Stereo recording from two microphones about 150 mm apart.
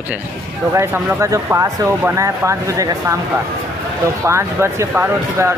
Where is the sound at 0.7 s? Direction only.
20° right (ahead or behind).